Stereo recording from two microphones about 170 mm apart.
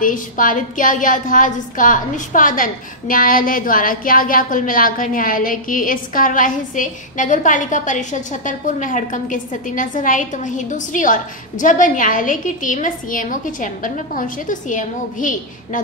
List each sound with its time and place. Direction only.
0.0 s a woman's voice: 50° left (ahead or behind)